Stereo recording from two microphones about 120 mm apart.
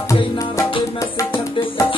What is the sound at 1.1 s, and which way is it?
Music, 25° left (ahead or behind).